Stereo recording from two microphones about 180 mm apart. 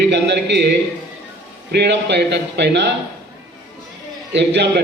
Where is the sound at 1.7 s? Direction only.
70° right (ahead or behind).